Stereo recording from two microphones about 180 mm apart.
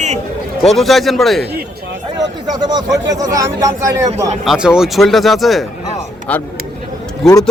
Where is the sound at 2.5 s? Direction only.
20° right (ahead or behind).